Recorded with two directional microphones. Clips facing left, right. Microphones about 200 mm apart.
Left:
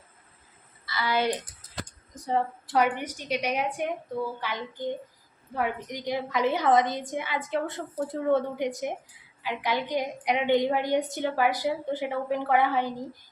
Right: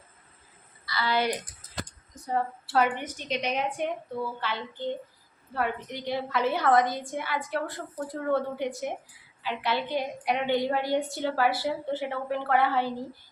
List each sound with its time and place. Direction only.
0.9 s speech: 20° left (ahead or behind)
2.1 s a sound: 50° left (ahead or behind)
2.6 s a woman's voice: 10° left (ahead or behind)